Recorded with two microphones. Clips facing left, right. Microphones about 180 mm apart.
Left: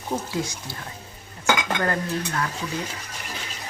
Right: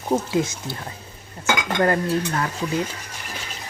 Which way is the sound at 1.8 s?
35° right (ahead or behind).